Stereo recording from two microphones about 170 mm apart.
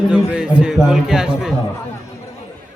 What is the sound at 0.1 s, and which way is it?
A man's voice, 5° right (ahead or behind).